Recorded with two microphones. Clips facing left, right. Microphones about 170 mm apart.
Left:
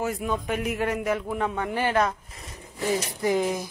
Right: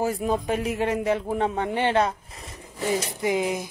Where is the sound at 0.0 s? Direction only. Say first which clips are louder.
Right 3 dB; 35° right (ahead or behind).